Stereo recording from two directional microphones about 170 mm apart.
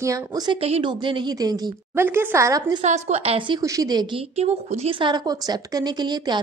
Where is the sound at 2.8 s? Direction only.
40° right (ahead or behind); by 4.2 s 25° right (ahead or behind).